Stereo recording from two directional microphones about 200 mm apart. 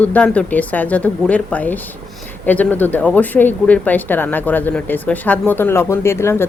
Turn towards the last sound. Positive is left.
turn(degrees=10)  # may be behind; listen again after turning